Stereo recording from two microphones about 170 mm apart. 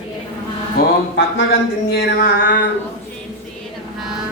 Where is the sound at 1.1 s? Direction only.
65° left (ahead or behind).